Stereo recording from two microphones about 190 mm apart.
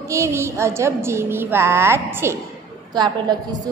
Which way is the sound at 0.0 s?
15° right (ahead or behind).